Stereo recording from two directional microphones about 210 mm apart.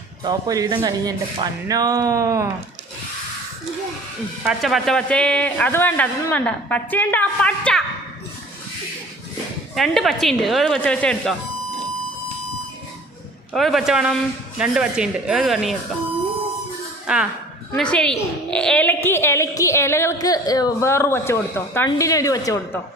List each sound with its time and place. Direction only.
0.3 s speech: 15° right (ahead or behind)
4.4 s a man's voice: centre (ahead or behind)
9.7 s speech: centre (ahead or behind)
13.5 s speech: centre (ahead or behind)
17.1 s a man's voice: 5° right (ahead or behind); by 22.8 s 15° left (ahead or behind)